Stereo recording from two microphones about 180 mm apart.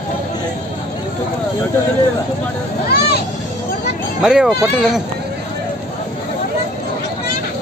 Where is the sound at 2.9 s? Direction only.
60° left (ahead or behind).